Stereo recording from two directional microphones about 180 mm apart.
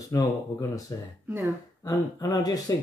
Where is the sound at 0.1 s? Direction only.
20° left (ahead or behind).